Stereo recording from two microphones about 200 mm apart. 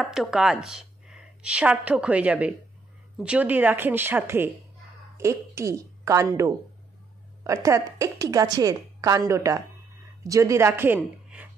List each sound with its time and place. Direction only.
0.0 s a woman's voice: 5° right (ahead or behind)